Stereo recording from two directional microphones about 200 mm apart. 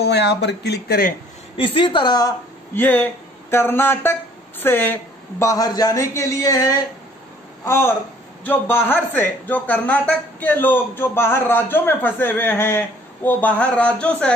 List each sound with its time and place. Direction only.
0.0 s speech: 55° left (ahead or behind)
1.6 s a woman's voice: 25° left (ahead or behind); by 14.3 s 5° left (ahead or behind)